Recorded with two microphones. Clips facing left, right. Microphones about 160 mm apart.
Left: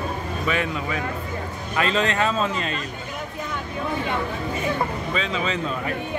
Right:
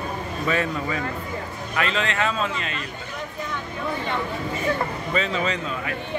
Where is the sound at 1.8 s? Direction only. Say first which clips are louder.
Left 3 dB; 35° left (ahead or behind).